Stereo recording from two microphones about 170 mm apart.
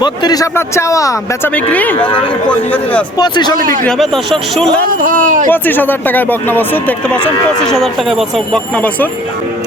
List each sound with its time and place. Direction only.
0.0 s a man's voice: 25° left (ahead or behind); by 3.0 s 10° left (ahead or behind)
3.2 s a man's voice: 25° left (ahead or behind)
3.8 s speech: centre (ahead or behind)
4.9 s speech: 55° right (ahead or behind)
5.5 s speech: 10° left (ahead or behind)